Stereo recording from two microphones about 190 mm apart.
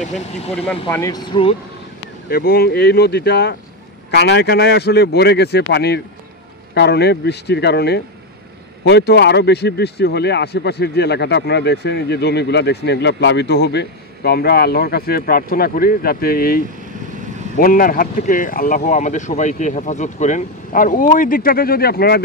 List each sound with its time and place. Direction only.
0.7 s speech: 10° left (ahead or behind)
2.2 s speech: 50° left (ahead or behind)